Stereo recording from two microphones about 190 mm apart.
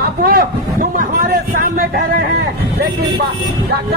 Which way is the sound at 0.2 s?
50° right (ahead or behind).